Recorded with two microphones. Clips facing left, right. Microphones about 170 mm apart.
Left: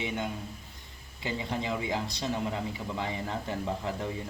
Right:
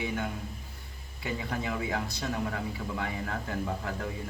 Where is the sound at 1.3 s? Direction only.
25° left (ahead or behind).